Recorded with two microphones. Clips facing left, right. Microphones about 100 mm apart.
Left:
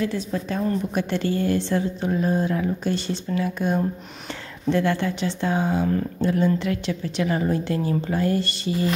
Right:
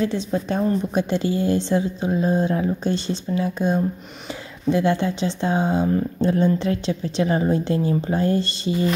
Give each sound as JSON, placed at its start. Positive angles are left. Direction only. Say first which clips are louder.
{"t": 0.0, "sound": "speech", "louder": "right 3 dB", "side_deg": -25}